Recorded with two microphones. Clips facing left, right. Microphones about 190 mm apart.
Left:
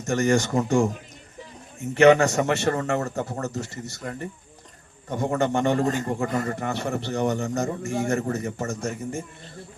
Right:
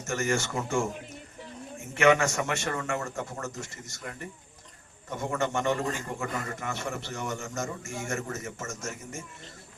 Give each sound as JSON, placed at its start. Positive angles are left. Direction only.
{"t": 0.0, "sound": "a man's voice", "side_deg": 35}
{"t": 2.0, "sound": "a man's voice", "side_deg": 35}